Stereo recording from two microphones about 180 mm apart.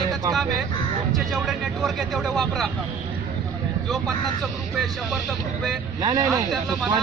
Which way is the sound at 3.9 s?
Centre (ahead or behind).